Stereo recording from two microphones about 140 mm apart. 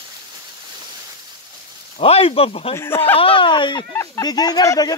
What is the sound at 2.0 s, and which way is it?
Speech, 45° left (ahead or behind).